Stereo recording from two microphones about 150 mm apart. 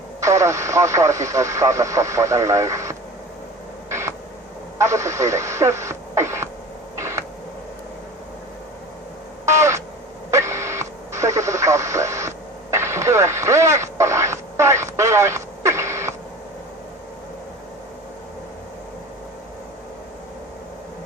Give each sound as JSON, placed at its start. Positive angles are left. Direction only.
{"t": 0.2, "sound": "speech", "side_deg": -20}
{"t": 3.8, "sound": "a sound", "side_deg": -20}
{"t": 4.8, "sound": "speech", "side_deg": -20}
{"t": 6.9, "sound": "radio", "side_deg": -20}
{"t": 9.5, "sound": "crow", "side_deg": -20}
{"t": 10.3, "sound": "radio", "side_deg": -20}